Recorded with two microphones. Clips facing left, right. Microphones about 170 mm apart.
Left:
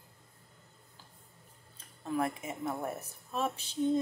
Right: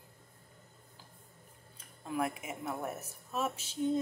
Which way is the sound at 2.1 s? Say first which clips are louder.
Left 2 dB; 10° right (ahead or behind).